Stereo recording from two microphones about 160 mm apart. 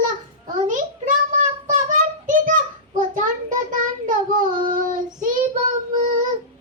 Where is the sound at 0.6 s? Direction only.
55° right (ahead or behind).